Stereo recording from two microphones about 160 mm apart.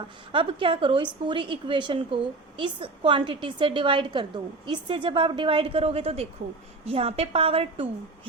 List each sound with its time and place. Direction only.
0.3 s a woman's voice: 35° right (ahead or behind)